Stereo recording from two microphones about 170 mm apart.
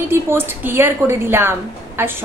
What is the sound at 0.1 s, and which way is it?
A woman's voice, 15° right (ahead or behind).